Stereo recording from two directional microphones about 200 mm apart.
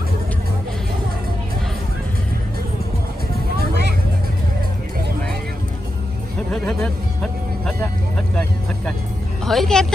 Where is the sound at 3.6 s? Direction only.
55° right (ahead or behind).